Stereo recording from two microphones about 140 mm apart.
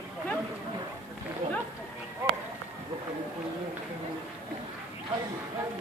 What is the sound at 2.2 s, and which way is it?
Run, 25° right (ahead or behind).